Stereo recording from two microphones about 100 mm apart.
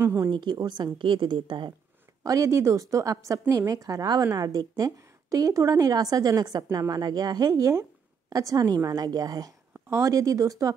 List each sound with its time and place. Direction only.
0.0 s a woman's voice: 25° right (ahead or behind)
0.3 s a woman's voice: 50° right (ahead or behind)
2.2 s a woman's voice: 30° right (ahead or behind)
9.8 s a woman's voice: 30° right (ahead or behind)